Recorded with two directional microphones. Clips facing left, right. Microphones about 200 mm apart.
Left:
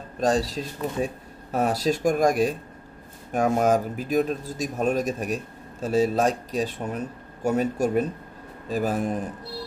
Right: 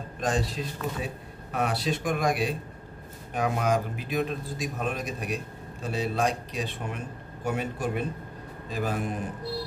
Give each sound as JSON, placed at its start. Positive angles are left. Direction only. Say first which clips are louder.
{"t": 0.2, "sound": "a man's voice", "louder": "left 5 dB", "side_deg": 40}